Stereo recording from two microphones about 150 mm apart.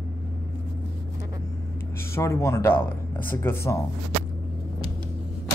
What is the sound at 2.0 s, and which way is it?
Speech, 20° left (ahead or behind).